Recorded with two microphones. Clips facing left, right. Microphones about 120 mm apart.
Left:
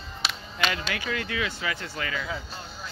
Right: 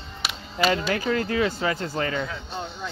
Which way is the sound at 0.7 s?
35° right (ahead or behind).